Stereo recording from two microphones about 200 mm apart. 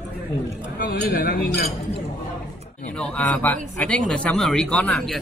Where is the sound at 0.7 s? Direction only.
50° left (ahead or behind).